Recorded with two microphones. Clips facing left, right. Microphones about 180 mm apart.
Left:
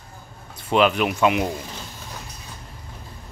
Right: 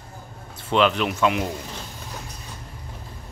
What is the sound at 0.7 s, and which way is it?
Speech, 10° left (ahead or behind).